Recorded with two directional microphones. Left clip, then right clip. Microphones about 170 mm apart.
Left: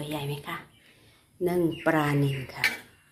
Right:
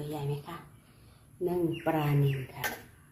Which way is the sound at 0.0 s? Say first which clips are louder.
Left 4 dB; 15° left (ahead or behind).